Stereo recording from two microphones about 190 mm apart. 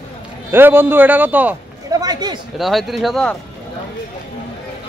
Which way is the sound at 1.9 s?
20° right (ahead or behind).